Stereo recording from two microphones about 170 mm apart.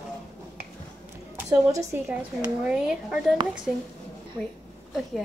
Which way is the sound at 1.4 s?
15° right (ahead or behind).